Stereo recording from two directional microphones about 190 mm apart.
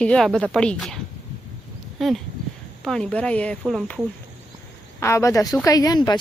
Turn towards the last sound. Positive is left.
turn(degrees=20)  # may be behind; listen again after turning